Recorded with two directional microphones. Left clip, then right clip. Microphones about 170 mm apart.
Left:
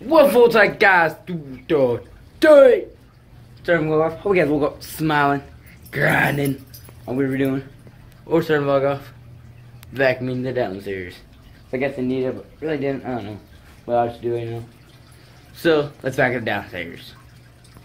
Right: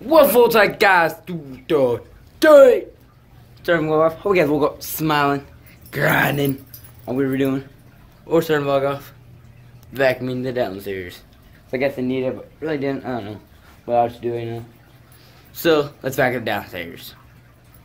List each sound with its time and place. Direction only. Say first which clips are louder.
0.0 s speech: even; 10° right (ahead or behind)